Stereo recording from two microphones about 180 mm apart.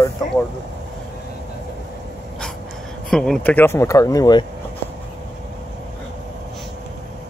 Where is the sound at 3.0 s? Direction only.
5° left (ahead or behind); by 4.4 s 20° left (ahead or behind).